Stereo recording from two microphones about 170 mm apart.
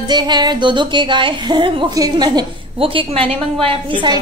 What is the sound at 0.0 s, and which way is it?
A woman's voice, 25° right (ahead or behind).